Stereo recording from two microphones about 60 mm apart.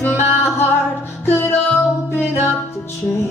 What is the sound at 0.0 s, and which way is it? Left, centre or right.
Music, left.